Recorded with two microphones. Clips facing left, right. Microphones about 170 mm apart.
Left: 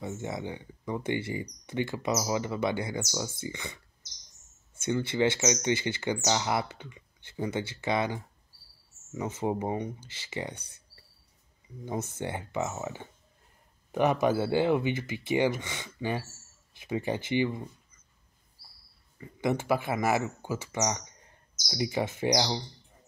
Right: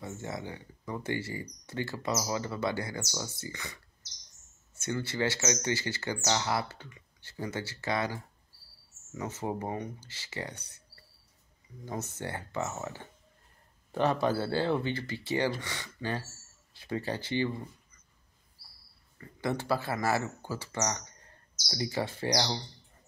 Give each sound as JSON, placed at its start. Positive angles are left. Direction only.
{"t": 0.0, "sound": "speech", "side_deg": 20}
{"t": 4.8, "sound": "speech", "side_deg": 20}
{"t": 11.8, "sound": "speech", "side_deg": 15}
{"t": 19.1, "sound": "speech", "side_deg": 15}